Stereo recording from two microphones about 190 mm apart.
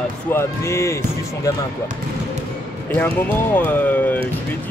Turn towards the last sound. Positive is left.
turn(degrees=10)  # may be behind; listen again after turning